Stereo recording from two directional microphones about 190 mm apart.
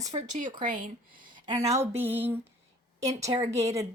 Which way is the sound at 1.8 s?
10° right (ahead or behind).